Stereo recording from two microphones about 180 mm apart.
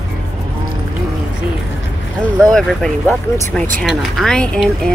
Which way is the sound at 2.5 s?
Centre (ahead or behind).